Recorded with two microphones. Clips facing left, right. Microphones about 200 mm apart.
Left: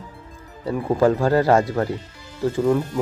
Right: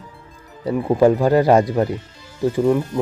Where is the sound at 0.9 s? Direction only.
15° right (ahead or behind).